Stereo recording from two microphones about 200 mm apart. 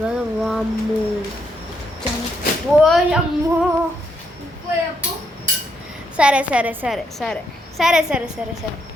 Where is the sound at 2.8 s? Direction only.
Centre (ahead or behind).